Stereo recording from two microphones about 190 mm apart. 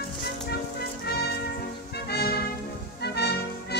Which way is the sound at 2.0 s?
55° left (ahead or behind).